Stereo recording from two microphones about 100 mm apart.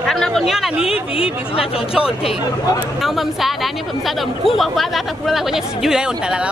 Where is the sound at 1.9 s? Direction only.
5° right (ahead or behind).